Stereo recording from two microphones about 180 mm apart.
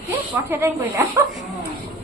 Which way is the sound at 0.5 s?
15° right (ahead or behind).